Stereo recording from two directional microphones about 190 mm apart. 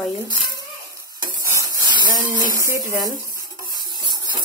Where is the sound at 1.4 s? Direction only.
15° right (ahead or behind).